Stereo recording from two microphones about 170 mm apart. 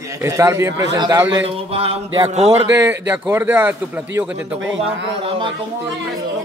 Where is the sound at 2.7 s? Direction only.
15° right (ahead or behind).